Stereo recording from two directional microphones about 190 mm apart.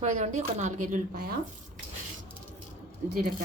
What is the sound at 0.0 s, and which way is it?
Speech, 40° right (ahead or behind).